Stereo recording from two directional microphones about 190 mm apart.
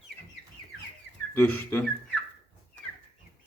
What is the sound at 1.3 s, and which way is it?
Speech, 10° left (ahead or behind).